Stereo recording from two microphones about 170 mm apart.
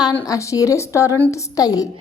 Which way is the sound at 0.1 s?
15° left (ahead or behind).